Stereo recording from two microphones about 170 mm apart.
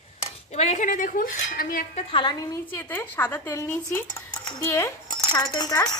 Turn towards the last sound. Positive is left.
turn(degrees=20)  # may be behind; listen again after turning